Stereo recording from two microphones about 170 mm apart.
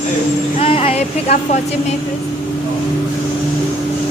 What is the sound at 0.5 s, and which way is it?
Speech, 35° left (ahead or behind).